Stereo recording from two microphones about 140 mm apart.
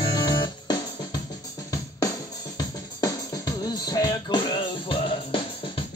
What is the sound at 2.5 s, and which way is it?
Music, 25° left (ahead or behind).